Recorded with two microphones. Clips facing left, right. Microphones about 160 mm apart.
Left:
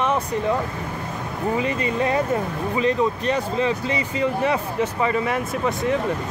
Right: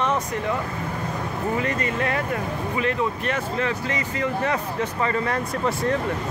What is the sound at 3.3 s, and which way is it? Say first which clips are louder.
Speech: left 3 dB; 15° left (ahead or behind).